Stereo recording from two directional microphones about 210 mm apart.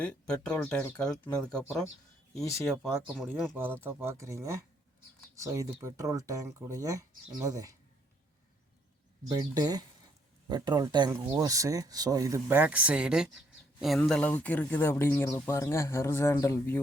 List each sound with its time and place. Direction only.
0.0 s speech: 5° left (ahead or behind)
2.6 s speech: centre (ahead or behind)
9.3 s speech: 20° right (ahead or behind); by 16.8 s 10° left (ahead or behind)